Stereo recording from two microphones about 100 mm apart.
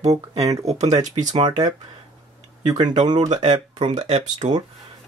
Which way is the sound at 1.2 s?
70° right (ahead or behind).